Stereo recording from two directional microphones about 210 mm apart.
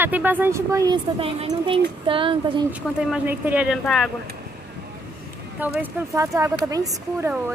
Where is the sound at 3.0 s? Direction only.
5° right (ahead or behind).